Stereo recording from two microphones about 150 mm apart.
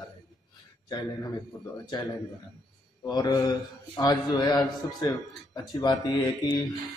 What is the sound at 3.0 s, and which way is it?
A man's voice, 25° left (ahead or behind).